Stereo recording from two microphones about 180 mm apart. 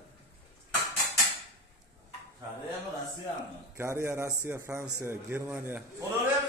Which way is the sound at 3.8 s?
15° right (ahead or behind).